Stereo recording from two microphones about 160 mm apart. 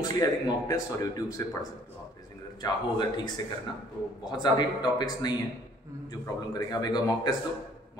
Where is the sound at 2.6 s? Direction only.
25° left (ahead or behind).